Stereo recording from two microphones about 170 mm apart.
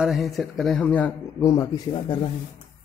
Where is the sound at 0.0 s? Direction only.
Centre (ahead or behind).